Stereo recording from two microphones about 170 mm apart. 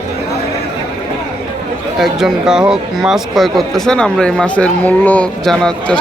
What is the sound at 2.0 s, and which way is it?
Speech, centre (ahead or behind).